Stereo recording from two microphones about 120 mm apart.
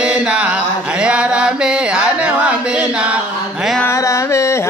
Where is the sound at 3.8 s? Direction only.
25° left (ahead or behind).